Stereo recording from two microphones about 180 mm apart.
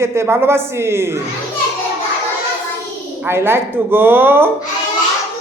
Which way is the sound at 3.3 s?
15° right (ahead or behind).